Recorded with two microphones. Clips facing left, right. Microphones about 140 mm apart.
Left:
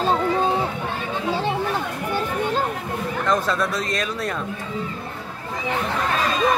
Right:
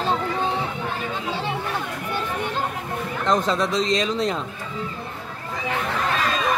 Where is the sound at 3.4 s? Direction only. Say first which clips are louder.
Right 2 dB; 20° right (ahead or behind).